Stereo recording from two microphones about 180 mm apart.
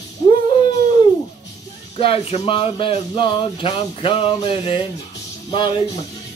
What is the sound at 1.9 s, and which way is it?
Speech, 30° left (ahead or behind).